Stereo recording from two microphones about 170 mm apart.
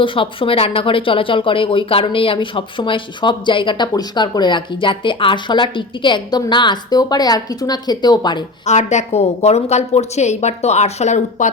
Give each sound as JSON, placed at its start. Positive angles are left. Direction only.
{"t": 0.0, "sound": "speech", "side_deg": 30}
{"t": 8.6, "sound": "a woman's voice", "side_deg": 40}